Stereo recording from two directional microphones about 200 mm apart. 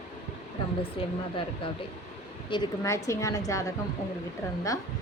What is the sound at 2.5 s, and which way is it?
A woman's voice, 20° left (ahead or behind).